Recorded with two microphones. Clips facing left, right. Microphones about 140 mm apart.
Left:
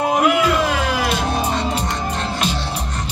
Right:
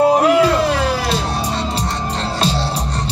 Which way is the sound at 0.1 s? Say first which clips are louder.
Right 4 dB; 35° right (ahead or behind).